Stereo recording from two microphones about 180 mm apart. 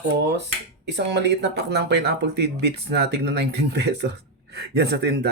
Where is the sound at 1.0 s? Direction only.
70° right (ahead or behind).